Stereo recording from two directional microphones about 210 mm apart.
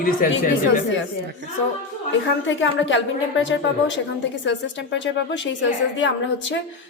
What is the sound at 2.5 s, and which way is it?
A woman's voice, 60° left (ahead or behind).